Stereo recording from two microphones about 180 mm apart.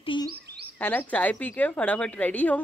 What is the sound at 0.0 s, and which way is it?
Bird, 25° left (ahead or behind).